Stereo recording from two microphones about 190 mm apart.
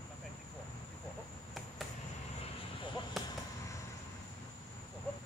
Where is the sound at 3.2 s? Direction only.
Centre (ahead or behind).